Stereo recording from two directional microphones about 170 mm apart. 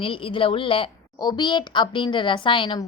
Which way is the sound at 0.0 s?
30° left (ahead or behind).